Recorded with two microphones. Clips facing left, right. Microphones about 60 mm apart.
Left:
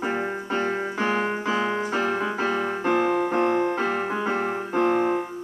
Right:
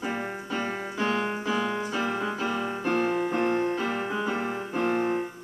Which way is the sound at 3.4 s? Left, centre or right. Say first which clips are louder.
Left 3 dB; left.